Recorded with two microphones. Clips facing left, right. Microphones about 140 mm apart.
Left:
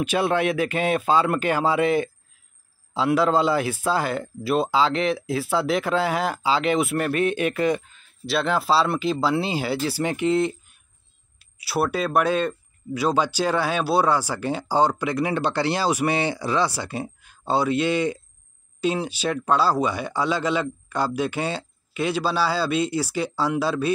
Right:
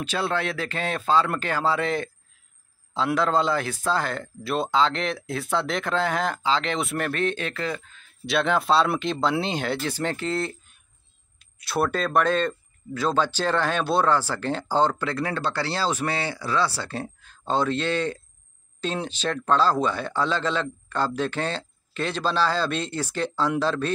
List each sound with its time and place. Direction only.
0.0 s speech: 15° left (ahead or behind)
3.1 s speech: 5° left (ahead or behind)
7.9 s speech: 5° left (ahead or behind)